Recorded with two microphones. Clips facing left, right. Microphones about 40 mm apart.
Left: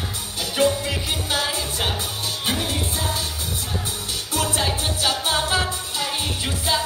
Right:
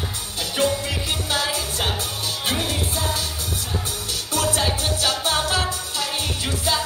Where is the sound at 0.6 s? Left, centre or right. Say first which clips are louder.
Left 2 dB; left.